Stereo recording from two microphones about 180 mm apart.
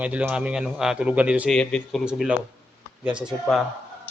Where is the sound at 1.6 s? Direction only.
5° left (ahead or behind).